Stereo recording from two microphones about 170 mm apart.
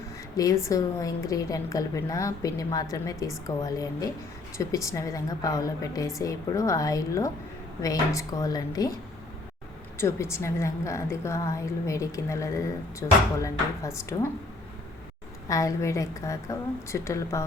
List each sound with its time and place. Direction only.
0.3 s a woman's voice: 20° left (ahead or behind)
10.0 s a woman's voice: 15° left (ahead or behind)
15.4 s a woman's voice: 20° left (ahead or behind)